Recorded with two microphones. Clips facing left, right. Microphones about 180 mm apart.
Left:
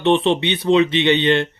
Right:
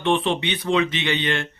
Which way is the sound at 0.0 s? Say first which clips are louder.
Left 5 dB; 25° left (ahead or behind).